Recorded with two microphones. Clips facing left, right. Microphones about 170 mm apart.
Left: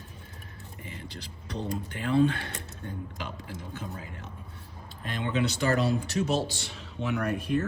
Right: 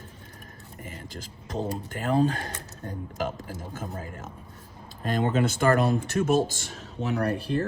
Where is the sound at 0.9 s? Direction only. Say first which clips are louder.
Right 2 dB; 45° right (ahead or behind).